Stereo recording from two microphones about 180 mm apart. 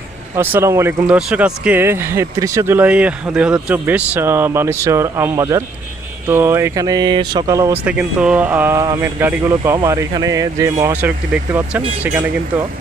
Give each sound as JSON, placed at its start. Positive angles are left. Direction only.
{"t": 0.4, "sound": "speech", "side_deg": -10}
{"t": 7.8, "sound": "speech", "side_deg": -5}